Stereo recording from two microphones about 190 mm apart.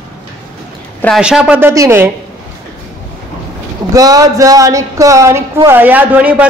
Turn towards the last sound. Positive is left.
turn(degrees=-5)  # may be behind; listen again after turning